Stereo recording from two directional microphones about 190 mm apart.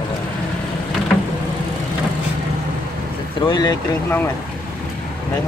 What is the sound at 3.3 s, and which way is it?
Speech, 20° left (ahead or behind).